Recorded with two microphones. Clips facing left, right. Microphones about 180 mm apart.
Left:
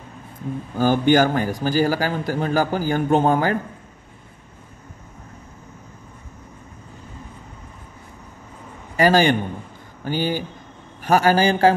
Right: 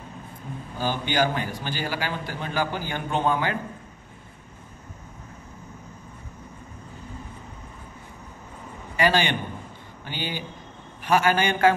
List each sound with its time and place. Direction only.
0.7 s a man's voice: 50° left (ahead or behind)
8.9 s a man's voice: 40° left (ahead or behind)